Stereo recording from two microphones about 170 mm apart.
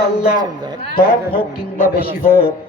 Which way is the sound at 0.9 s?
65° left (ahead or behind).